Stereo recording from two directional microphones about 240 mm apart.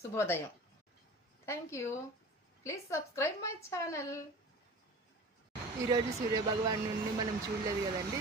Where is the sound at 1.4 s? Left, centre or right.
Centre.